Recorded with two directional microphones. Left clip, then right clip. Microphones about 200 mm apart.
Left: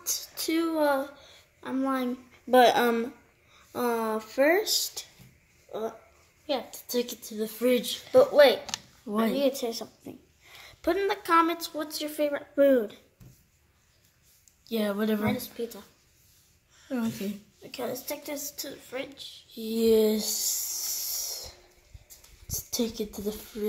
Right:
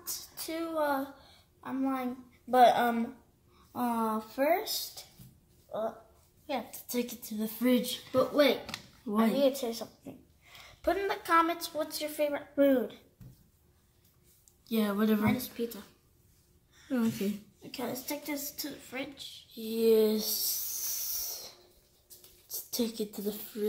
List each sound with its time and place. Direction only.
0.0 s a sound: 55° left (ahead or behind)
1.6 s a woman's voice: 55° left (ahead or behind)
6.4 s a woman's voice: 15° left (ahead or behind)
8.1 s a woman's voice: 45° left (ahead or behind)
14.7 s a woman's voice: 20° left (ahead or behind)
17.7 s a woman's voice: 50° left (ahead or behind)
19.5 s a sound: 15° left (ahead or behind)
22.5 s a woman's voice: 10° left (ahead or behind)